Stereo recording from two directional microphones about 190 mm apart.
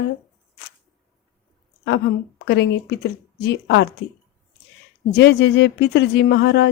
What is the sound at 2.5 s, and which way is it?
A woman's voice, 60° left (ahead or behind).